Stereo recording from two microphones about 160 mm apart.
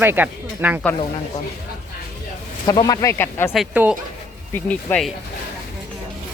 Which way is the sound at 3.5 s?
5° right (ahead or behind).